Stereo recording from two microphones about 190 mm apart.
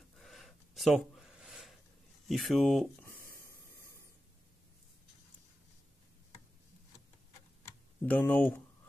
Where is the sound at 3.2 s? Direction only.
50° left (ahead or behind).